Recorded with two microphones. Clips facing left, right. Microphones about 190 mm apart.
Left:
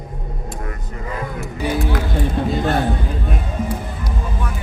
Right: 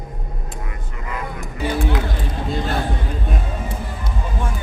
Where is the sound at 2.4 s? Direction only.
55° left (ahead or behind).